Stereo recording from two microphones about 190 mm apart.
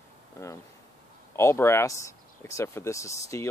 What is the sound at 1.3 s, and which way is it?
Speech, 15° left (ahead or behind).